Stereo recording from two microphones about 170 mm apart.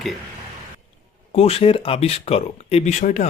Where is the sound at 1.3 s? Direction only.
35° left (ahead or behind).